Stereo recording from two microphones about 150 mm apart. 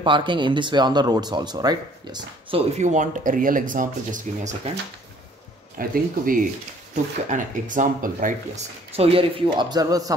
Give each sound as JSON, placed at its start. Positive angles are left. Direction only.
{"t": 0.0, "sound": "speech", "side_deg": -35}
{"t": 2.5, "sound": "speech", "side_deg": -50}
{"t": 5.8, "sound": "speech", "side_deg": -70}
{"t": 7.2, "sound": "speech", "side_deg": -60}
{"t": 8.9, "sound": "speech", "side_deg": -40}